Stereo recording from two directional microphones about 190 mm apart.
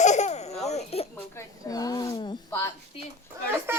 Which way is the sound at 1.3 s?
20° left (ahead or behind).